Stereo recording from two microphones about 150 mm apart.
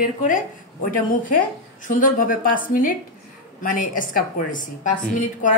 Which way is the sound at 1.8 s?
65° left (ahead or behind).